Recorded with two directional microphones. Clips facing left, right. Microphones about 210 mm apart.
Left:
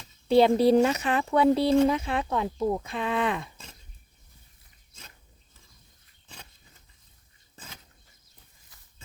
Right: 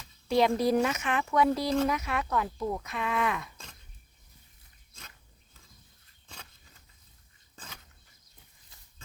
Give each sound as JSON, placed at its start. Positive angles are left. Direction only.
{"t": 0.3, "sound": "speech", "side_deg": 30}